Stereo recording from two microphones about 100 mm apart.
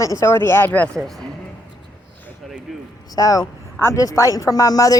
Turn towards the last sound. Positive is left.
turn(degrees=35)  # may be behind; listen again after turning